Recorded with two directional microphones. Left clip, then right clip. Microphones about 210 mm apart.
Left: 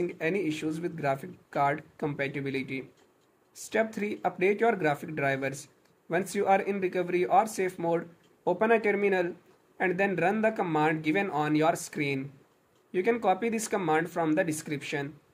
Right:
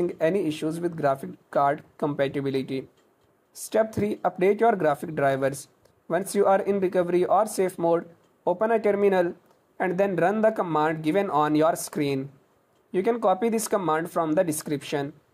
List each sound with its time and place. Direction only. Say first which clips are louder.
0.0 s speech: right 6 dB; 20° right (ahead or behind)